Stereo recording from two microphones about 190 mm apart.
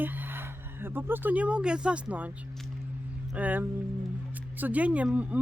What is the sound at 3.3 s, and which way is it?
Speech, 10° right (ahead or behind).